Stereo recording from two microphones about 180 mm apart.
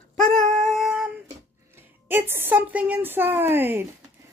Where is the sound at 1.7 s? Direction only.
10° right (ahead or behind).